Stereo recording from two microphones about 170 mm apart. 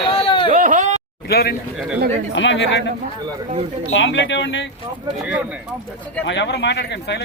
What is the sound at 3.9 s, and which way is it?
Speech, 90° left.